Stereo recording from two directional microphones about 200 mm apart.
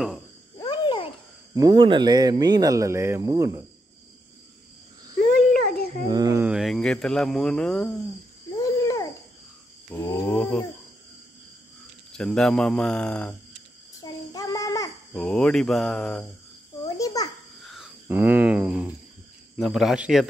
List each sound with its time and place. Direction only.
0.6 s babbling: 25° left (ahead or behind)
1.5 s speech: 20° right (ahead or behind)
6.0 s speech: 20° right (ahead or behind); by 8.1 s 5° left (ahead or behind)
8.5 s babbling: 15° left (ahead or behind)
9.8 s mantra: 15° left (ahead or behind)
12.1 s speech: 5° left (ahead or behind)
14.3 s child singing: 15° left (ahead or behind)
15.1 s speech: 5° left (ahead or behind)
16.8 s babbling: 15° left (ahead or behind)
17.6 s a sound: centre (ahead or behind)
18.0 s speech: 10° right (ahead or behind)